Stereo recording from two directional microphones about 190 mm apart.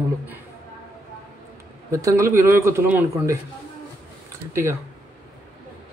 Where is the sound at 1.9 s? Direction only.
15° right (ahead or behind).